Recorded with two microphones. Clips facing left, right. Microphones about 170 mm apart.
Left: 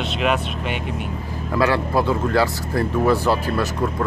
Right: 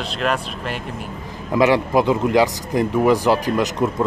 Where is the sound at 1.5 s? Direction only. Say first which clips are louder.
Right 4 dB; 15° right (ahead or behind).